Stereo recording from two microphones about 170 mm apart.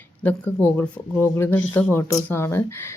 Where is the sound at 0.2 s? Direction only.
10° left (ahead or behind).